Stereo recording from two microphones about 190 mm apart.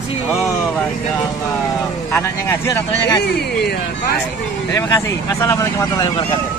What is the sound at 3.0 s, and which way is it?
Speech, 55° left (ahead or behind).